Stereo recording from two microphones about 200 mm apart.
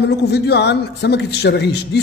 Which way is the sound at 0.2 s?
55° left (ahead or behind).